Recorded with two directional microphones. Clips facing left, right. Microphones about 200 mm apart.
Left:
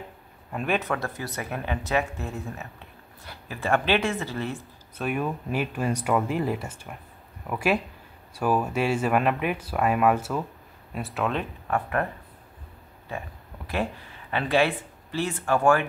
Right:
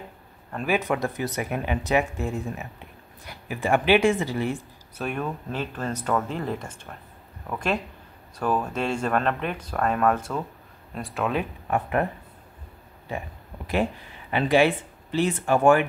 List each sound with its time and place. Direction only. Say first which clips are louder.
0.5 s speech: right 1 dB; 5° left (ahead or behind)
0.7 s speech: right 3 dB; 15° right (ahead or behind)
5.0 s speech: left 1 dB; 10° left (ahead or behind)
11.6 s speech: right 2 dB; 20° right (ahead or behind)
14.3 s speech: right 3 dB; 15° right (ahead or behind)